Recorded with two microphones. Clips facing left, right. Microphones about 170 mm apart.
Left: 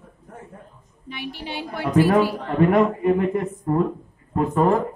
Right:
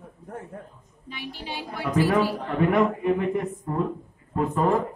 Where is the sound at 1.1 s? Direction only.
65° left (ahead or behind).